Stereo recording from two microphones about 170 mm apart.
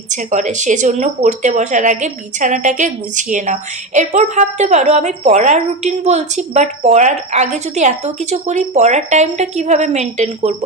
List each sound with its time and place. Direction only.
0.1 s speech: 45° right (ahead or behind)